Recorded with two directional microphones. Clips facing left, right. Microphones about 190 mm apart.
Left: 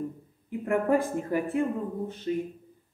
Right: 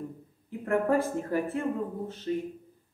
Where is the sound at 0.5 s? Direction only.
15° left (ahead or behind).